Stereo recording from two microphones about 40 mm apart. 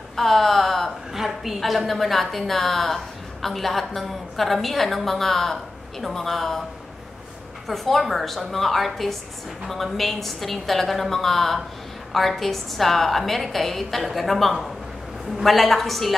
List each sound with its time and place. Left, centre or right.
0.1 s a woman's voice: centre
7.6 s a woman's voice: centre